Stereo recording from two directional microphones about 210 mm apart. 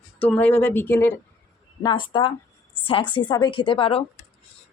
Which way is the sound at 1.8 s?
20° left (ahead or behind).